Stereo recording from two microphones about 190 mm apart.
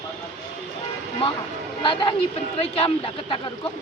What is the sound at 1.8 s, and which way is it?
Speech, 25° left (ahead or behind).